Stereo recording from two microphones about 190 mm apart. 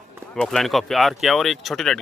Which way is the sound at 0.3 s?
5° left (ahead or behind).